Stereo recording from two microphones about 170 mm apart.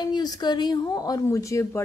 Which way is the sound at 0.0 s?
25° left (ahead or behind).